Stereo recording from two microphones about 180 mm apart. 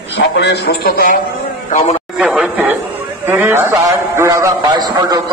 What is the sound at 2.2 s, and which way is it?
A man's voice, 10° right (ahead or behind).